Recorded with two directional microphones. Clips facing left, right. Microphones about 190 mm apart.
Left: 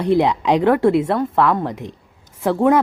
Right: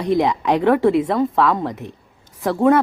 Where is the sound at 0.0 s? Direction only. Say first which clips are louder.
Left 2 dB; 10° left (ahead or behind).